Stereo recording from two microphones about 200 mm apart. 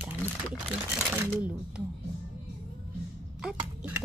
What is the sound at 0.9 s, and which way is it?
Speech, 10° right (ahead or behind).